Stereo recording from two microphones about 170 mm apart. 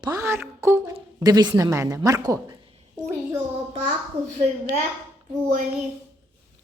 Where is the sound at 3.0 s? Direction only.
45° right (ahead or behind).